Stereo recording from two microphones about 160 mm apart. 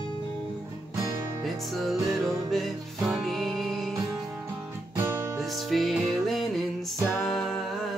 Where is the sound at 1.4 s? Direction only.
Centre (ahead or behind).